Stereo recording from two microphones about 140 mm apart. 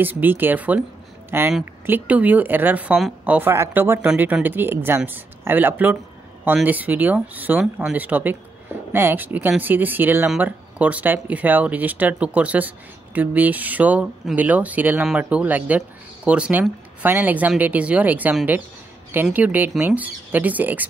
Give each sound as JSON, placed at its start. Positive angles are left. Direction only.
{"t": 0.0, "sound": "speech", "side_deg": -15}